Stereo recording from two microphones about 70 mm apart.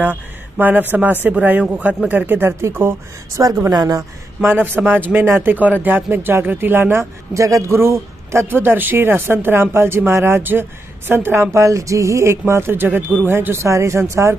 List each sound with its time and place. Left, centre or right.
0.0 s a sound: right
1.2 s speech: right
3.4 s speech: right
4.4 s speech: right
11.5 s speech: right
13.7 s speech: right